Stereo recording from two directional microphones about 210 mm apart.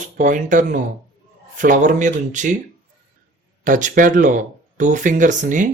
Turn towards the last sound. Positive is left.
turn(degrees=-35)  # may be behind; listen again after turning